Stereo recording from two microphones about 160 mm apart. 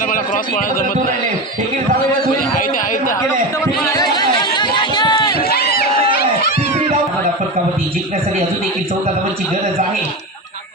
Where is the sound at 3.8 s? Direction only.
25° left (ahead or behind).